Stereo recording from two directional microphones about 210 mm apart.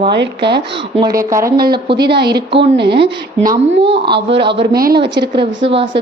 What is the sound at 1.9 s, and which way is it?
A woman's voice, 50° right (ahead or behind).